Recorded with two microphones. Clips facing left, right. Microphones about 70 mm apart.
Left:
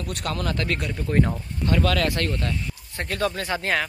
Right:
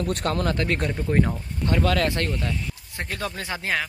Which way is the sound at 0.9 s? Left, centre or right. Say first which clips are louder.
Even; centre.